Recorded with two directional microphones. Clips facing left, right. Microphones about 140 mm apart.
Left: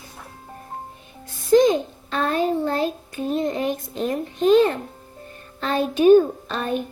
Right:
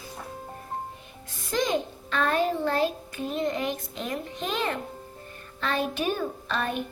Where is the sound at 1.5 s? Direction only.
35° left (ahead or behind).